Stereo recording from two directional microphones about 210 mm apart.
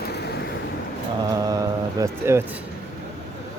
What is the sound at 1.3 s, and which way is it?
Speech, 15° right (ahead or behind).